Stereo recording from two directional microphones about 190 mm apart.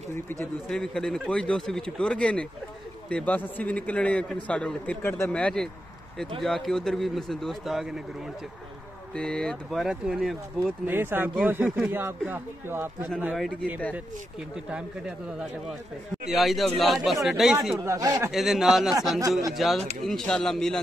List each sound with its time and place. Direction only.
0.1 s a man's voice: 10° left (ahead or behind)
9.1 s a man's voice: 5° left (ahead or behind)
17.8 s speech: 15° right (ahead or behind)
18.3 s a man's voice: centre (ahead or behind)